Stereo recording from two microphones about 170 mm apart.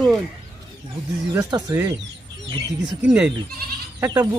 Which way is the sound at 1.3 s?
15° right (ahead or behind).